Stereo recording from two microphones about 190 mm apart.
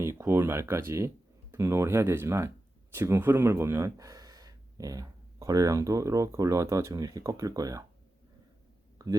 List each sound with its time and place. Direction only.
0.0 s speech: 15° right (ahead or behind)
9.0 s speech: 20° right (ahead or behind)